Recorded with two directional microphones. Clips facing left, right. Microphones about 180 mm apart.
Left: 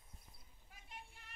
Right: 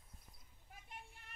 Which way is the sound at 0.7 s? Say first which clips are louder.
Right 5 dB; 50° right (ahead or behind).